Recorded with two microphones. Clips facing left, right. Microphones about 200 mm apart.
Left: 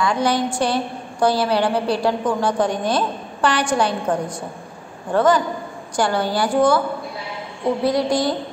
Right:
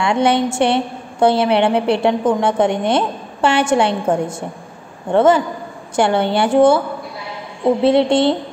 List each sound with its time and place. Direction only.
0.0 s a woman's voice: 25° right (ahead or behind)
7.8 s a woman's voice: 25° right (ahead or behind)